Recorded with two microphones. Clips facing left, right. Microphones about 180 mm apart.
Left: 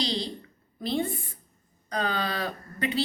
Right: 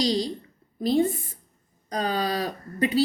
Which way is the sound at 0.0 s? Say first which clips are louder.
Right 6 dB; 40° right (ahead or behind).